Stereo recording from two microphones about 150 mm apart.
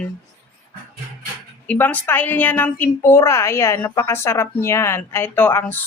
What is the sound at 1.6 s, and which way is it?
A woman's voice, 10° left (ahead or behind).